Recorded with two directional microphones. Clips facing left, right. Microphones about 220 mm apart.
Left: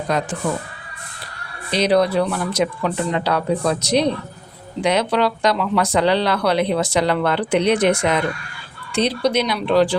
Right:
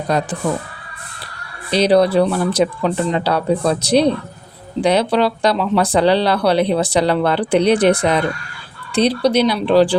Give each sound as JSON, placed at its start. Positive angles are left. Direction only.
{"t": 0.1, "sound": "speech", "side_deg": -35}
{"t": 1.7, "sound": "speech", "side_deg": -35}